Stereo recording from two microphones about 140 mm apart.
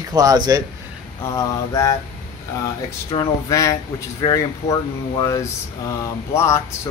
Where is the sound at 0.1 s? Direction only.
25° right (ahead or behind).